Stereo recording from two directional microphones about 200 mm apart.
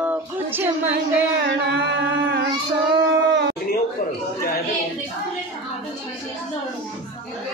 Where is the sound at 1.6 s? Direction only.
55° right (ahead or behind).